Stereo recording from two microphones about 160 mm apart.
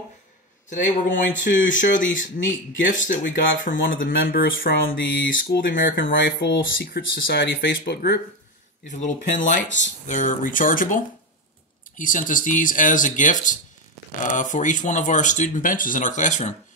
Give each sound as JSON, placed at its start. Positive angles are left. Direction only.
{"t": 1.0, "sound": "speech", "side_deg": 55}
{"t": 8.8, "sound": "speech", "side_deg": 50}